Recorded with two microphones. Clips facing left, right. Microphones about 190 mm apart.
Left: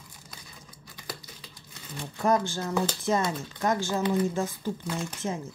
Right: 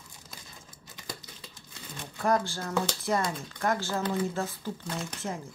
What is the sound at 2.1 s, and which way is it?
Speech, 20° left (ahead or behind).